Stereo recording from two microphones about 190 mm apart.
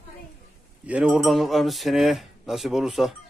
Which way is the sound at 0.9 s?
5° right (ahead or behind).